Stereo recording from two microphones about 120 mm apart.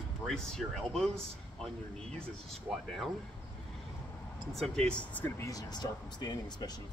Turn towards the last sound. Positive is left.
turn(degrees=35)  # may be behind; listen again after turning